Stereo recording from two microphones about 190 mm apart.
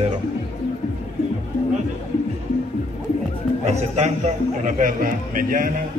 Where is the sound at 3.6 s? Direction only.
35° right (ahead or behind).